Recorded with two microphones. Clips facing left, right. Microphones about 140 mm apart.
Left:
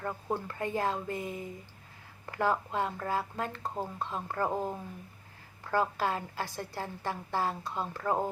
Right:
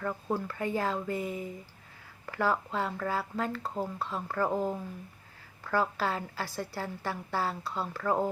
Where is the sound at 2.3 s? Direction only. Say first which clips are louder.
Even; 20° left (ahead or behind).